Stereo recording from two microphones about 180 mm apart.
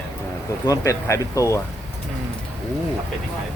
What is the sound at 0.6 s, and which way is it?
Speech, 15° left (ahead or behind).